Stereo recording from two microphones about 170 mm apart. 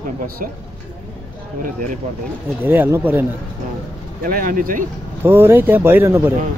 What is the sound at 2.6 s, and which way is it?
Speech, 10° right (ahead or behind).